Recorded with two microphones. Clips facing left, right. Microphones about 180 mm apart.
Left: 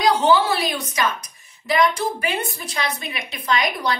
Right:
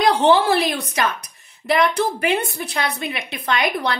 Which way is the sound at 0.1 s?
55° right (ahead or behind).